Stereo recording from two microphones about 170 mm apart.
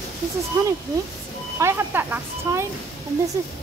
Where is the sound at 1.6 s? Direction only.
15° right (ahead or behind).